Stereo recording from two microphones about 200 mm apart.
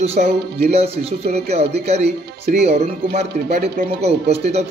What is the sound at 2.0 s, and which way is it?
Speech, 55° right (ahead or behind).